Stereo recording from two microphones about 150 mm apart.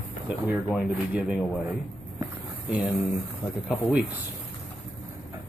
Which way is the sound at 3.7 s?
5° right (ahead or behind).